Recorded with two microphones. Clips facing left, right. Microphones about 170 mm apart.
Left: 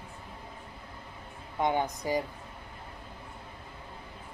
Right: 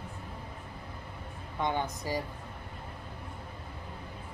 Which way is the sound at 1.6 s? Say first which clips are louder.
Left 3 dB; 15° left (ahead or behind).